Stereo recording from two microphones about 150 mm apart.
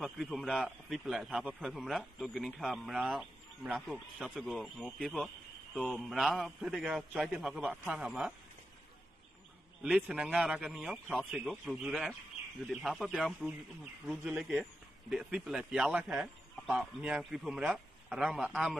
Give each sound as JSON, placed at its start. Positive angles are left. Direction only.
{"t": 0.0, "sound": "a man's voice", "side_deg": 0}
{"t": 9.8, "sound": "a man's voice", "side_deg": -5}